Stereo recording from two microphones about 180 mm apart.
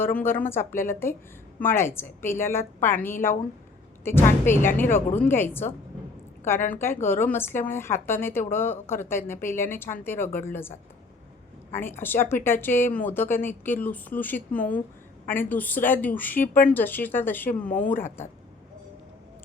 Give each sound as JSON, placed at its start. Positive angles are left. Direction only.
{"t": 0.0, "sound": "speech", "side_deg": 10}